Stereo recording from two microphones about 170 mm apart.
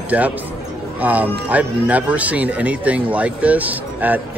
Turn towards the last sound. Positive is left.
turn(degrees=-10)  # may be behind; listen again after turning